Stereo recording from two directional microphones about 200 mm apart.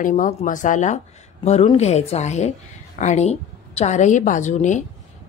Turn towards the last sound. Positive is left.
turn(degrees=35)  # may be behind; listen again after turning